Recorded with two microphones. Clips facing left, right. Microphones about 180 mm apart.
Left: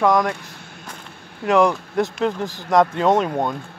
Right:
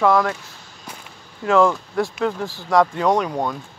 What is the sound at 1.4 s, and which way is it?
Speech, 15° left (ahead or behind).